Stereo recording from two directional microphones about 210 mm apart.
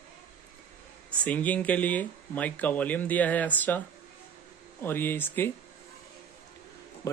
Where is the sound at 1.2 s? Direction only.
5° left (ahead or behind).